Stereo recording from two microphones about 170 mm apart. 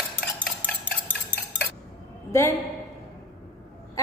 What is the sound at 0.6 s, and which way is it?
Stir, 10° left (ahead or behind).